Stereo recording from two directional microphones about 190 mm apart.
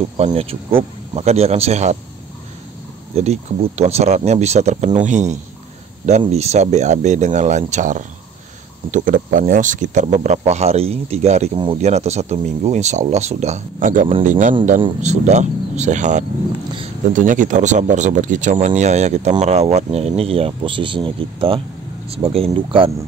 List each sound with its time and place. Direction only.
0.2 s speech: 35° right (ahead or behind)
3.2 s speech: 35° right (ahead or behind)